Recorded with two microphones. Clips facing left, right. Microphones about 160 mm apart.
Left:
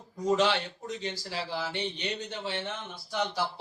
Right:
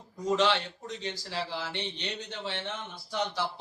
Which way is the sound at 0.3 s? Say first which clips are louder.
Right 3 dB; 5° left (ahead or behind).